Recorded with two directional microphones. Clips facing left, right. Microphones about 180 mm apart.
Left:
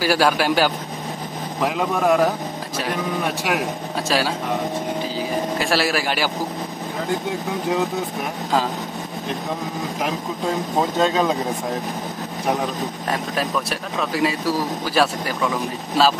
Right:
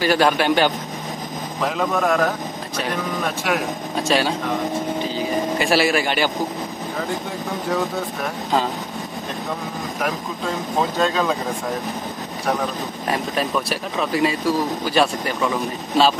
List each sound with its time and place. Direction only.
0.0 s a man's voice: 5° left (ahead or behind)
3.4 s speech: 5° left (ahead or behind)
5.6 s speech: centre (ahead or behind)
11.0 s speech: 20° left (ahead or behind)
13.1 s speech: centre (ahead or behind)